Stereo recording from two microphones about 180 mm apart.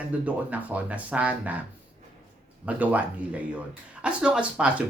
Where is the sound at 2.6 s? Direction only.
10° right (ahead or behind).